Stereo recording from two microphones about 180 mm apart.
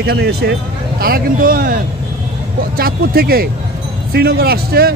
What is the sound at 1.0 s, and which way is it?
Speech, 55° right (ahead or behind).